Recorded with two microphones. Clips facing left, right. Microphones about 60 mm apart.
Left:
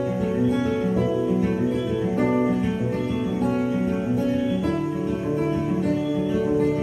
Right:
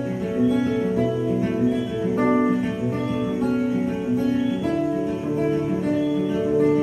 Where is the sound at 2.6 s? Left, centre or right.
Centre.